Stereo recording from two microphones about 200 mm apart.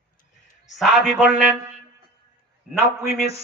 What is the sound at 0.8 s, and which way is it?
Speech, centre (ahead or behind).